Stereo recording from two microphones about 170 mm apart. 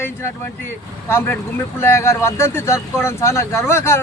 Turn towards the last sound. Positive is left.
turn(degrees=15)  # may be behind; listen again after turning